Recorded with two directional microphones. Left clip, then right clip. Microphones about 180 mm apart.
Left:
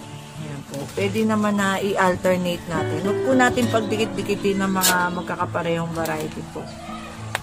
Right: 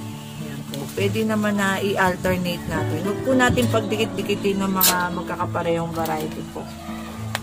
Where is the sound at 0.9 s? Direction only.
20° left (ahead or behind).